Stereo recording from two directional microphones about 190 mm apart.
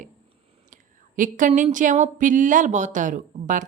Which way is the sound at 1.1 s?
45° right (ahead or behind).